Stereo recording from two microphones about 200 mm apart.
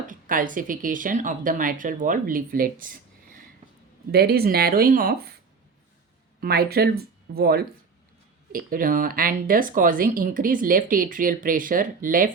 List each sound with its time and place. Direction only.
0.1 s speech: 40° right (ahead or behind)
4.1 s speech: 50° right (ahead or behind)
6.4 s speech: 50° right (ahead or behind)